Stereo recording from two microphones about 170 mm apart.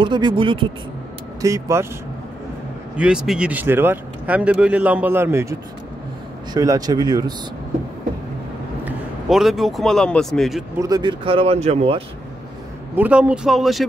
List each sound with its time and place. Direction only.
0.0 s speech: 25° right (ahead or behind)
1.4 s speech: 15° right (ahead or behind)
3.0 s speech: 5° right (ahead or behind); by 7.3 s 25° right (ahead or behind)
8.8 s a man's voice: centre (ahead or behind)
10.8 s speech: 25° right (ahead or behind)
12.9 s speech: 10° right (ahead or behind)